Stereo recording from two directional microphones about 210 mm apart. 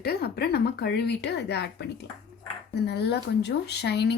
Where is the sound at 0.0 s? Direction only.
50° left (ahead or behind).